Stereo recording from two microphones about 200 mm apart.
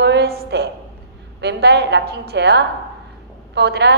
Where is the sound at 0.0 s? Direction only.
55° right (ahead or behind).